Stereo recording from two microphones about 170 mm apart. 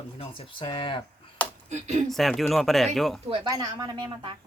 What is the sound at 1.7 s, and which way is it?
Speech, 40° right (ahead or behind).